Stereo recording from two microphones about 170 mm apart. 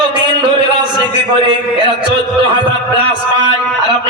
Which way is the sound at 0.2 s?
30° right (ahead or behind).